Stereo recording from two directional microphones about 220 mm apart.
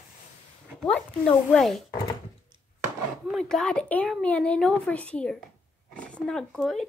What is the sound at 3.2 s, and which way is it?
Speech, centre (ahead or behind).